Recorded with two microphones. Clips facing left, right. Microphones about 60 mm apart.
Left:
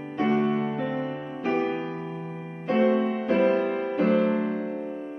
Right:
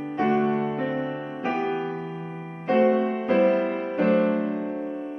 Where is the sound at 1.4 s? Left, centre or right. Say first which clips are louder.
Left 1 dB; right.